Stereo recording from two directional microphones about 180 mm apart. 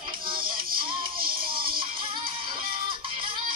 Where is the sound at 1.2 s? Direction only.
55° right (ahead or behind).